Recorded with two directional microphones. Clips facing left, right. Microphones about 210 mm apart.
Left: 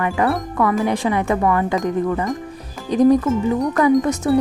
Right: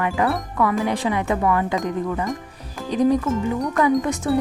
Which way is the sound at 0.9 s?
45° left (ahead or behind).